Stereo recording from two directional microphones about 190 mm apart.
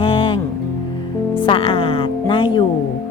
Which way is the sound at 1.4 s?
25° left (ahead or behind).